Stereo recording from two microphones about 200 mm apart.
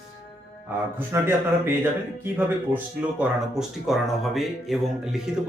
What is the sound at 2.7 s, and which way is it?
Speech, 5° right (ahead or behind).